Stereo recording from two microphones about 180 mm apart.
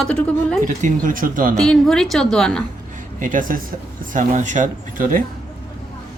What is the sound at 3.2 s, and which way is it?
Speech, 50° right (ahead or behind).